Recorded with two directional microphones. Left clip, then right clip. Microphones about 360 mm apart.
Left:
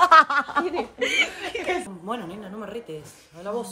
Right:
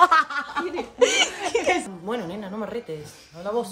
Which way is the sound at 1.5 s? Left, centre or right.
Centre.